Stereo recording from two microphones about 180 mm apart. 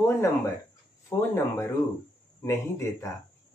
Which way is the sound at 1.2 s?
15° left (ahead or behind).